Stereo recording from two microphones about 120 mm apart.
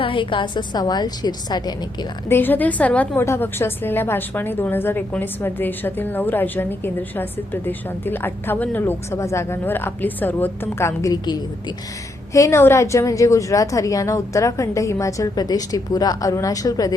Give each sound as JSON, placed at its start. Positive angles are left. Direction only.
{"t": 0.0, "sound": "a woman's voice", "side_deg": 45}
{"t": 2.3, "sound": "a woman's voice", "side_deg": 15}